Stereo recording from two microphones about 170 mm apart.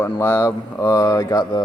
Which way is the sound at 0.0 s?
20° left (ahead or behind).